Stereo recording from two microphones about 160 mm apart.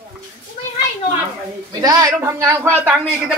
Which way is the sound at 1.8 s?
20° right (ahead or behind).